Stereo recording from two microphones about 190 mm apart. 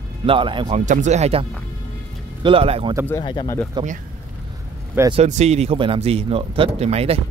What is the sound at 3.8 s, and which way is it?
Speech, 25° right (ahead or behind).